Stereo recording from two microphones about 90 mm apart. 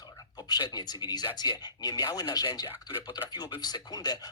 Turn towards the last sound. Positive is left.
turn(degrees=45)  # may be behind; listen again after turning